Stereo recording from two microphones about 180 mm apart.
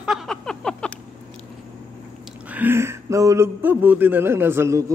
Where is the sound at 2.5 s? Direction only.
10° right (ahead or behind).